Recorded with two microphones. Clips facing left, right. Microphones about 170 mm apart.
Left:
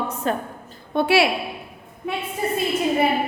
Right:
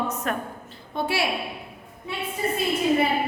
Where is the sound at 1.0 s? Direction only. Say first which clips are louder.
Left 8 dB; 75° left (ahead or behind).